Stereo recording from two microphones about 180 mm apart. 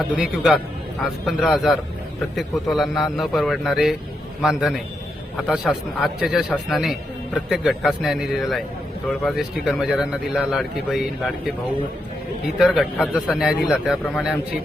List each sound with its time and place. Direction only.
0.2 s a man's voice: 5° right (ahead or behind)
12.5 s speech: 5° right (ahead or behind)